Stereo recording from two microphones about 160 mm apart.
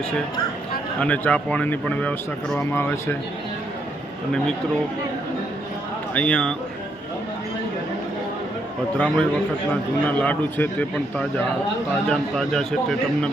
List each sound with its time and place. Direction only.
0.9 s speech: 10° left (ahead or behind)
6.1 s speech: 5° left (ahead or behind)
9.0 s speech: 10° left (ahead or behind)